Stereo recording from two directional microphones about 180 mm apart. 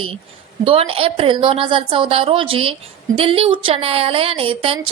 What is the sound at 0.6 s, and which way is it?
A woman's voice, 30° right (ahead or behind).